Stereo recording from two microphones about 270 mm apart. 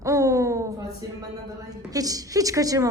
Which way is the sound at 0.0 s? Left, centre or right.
Centre.